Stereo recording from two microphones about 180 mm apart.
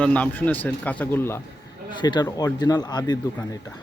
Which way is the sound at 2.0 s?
25° left (ahead or behind).